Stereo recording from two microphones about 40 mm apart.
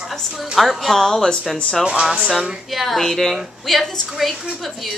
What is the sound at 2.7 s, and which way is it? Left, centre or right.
A woman's voice, centre.